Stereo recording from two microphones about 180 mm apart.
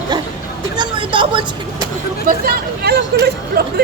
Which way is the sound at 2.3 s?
60° right (ahead or behind).